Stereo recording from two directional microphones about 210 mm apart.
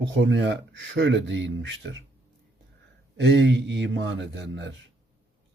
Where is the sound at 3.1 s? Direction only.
55° right (ahead or behind).